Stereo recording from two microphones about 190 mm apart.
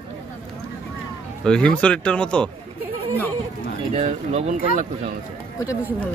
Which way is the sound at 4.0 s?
40° right (ahead or behind).